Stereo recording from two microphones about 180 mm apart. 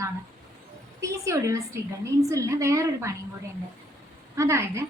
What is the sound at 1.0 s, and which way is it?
A woman's voice, 15° right (ahead or behind).